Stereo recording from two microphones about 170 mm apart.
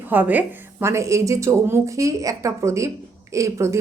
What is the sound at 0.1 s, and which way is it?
A woman's voice, 10° right (ahead or behind).